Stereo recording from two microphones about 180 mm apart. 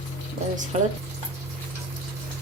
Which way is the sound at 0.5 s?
45° right (ahead or behind).